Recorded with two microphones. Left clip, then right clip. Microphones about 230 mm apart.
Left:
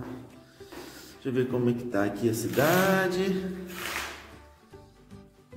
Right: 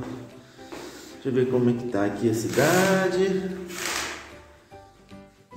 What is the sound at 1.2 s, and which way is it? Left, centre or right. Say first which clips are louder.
Speech: right 5 dB; centre.